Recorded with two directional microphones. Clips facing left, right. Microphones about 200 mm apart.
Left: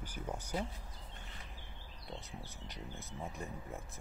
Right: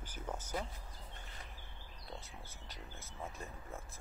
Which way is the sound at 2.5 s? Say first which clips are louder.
Left 4 dB; 15° left (ahead or behind).